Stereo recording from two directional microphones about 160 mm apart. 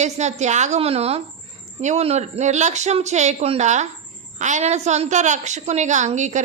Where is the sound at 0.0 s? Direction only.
45° right (ahead or behind).